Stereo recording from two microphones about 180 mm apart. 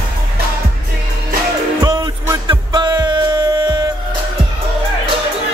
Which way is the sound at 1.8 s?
20° right (ahead or behind).